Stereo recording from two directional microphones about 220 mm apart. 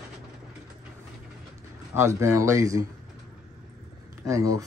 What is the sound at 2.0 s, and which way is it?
Speech, 15° right (ahead or behind).